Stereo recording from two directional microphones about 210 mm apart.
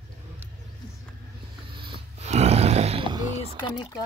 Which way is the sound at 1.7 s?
25° right (ahead or behind).